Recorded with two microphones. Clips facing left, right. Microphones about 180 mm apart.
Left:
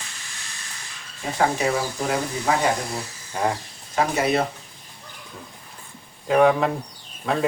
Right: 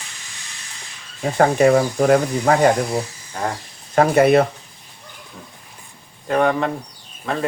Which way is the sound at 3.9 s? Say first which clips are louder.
Right 8 dB; 55° right (ahead or behind).